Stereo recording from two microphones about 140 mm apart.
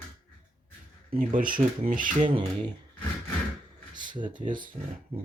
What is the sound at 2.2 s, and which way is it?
Speech, 40° right (ahead or behind).